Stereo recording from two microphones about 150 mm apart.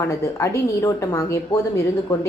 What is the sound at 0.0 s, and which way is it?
A woman's voice, 20° left (ahead or behind).